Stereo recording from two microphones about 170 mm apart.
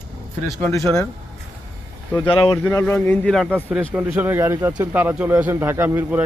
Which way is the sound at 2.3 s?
30° left (ahead or behind).